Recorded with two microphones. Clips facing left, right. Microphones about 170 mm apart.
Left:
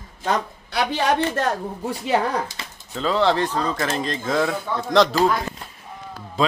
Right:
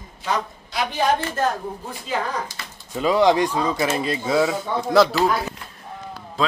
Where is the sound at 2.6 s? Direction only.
25° left (ahead or behind).